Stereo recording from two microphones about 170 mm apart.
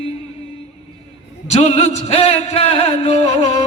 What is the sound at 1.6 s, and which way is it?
Music, 35° left (ahead or behind).